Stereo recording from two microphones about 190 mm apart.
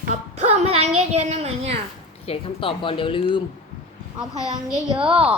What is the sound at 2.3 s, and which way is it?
A woman's voice, 25° left (ahead or behind).